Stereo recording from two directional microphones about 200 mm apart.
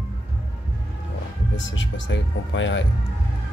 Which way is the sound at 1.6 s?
70° left (ahead or behind).